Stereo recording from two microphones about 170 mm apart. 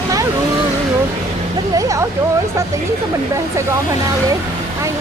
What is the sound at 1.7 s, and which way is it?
Speech, 20° right (ahead or behind).